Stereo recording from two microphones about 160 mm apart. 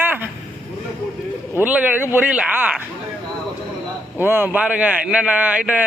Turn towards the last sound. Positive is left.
turn(degrees=-10)  # may be behind; listen again after turning